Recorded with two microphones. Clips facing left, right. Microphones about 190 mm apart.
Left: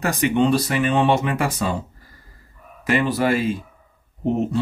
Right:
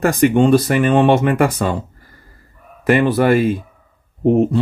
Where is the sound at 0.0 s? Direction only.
50° right (ahead or behind).